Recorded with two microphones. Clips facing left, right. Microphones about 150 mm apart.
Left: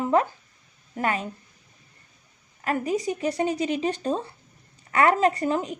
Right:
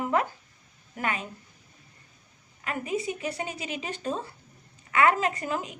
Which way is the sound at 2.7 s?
40° left (ahead or behind).